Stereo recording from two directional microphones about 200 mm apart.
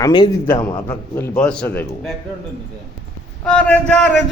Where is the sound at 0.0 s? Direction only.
20° left (ahead or behind).